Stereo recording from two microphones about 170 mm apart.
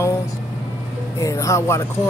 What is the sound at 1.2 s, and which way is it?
Speech, 20° left (ahead or behind).